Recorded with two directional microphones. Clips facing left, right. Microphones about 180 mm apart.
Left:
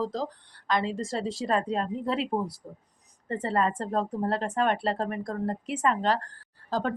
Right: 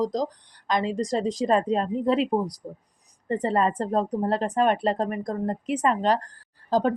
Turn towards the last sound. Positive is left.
turn(degrees=-15)  # may be behind; listen again after turning